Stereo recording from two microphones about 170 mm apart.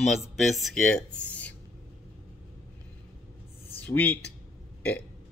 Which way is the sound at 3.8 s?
10° left (ahead or behind).